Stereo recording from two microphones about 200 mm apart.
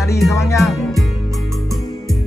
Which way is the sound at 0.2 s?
Centre (ahead or behind).